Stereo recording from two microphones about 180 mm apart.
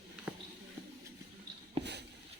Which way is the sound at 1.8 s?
70° right (ahead or behind).